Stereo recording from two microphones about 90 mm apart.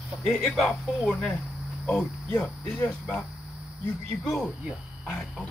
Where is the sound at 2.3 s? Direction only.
20° left (ahead or behind).